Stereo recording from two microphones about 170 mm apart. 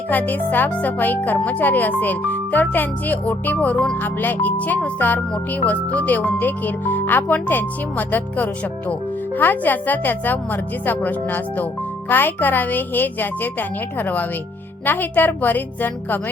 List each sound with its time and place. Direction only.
0.1 s speech: 10° left (ahead or behind)